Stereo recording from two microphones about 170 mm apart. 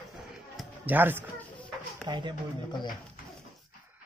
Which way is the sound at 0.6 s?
10° right (ahead or behind).